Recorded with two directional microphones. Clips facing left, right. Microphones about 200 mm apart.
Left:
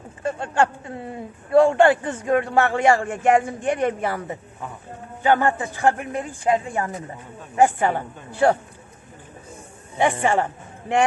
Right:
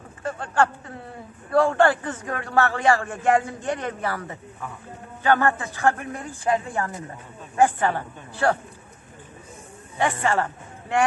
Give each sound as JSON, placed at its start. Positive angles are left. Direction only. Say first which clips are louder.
{"t": 0.2, "sound": "speech", "louder": "left 2 dB", "side_deg": 20}
{"t": 9.9, "sound": "a man's voice", "louder": "left 3 dB", "side_deg": 20}